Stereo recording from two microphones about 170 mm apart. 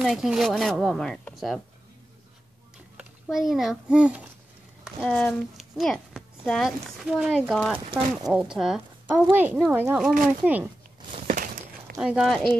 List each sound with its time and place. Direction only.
0.0 s speech: centre (ahead or behind)
3.0 s speech: centre (ahead or behind)
4.8 s speech: 5° left (ahead or behind)
7.8 s speech: 40° right (ahead or behind)
8.3 s speech: 5° right (ahead or behind)
11.2 s a sound: 50° right (ahead or behind)
12.0 s speech: centre (ahead or behind)